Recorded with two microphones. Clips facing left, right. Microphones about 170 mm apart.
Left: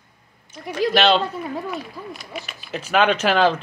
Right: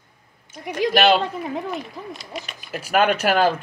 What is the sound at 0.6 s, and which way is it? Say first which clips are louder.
Speech: even; 15° right (ahead or behind).